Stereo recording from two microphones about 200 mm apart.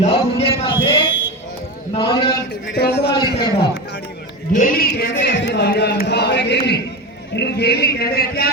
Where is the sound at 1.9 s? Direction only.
25° left (ahead or behind).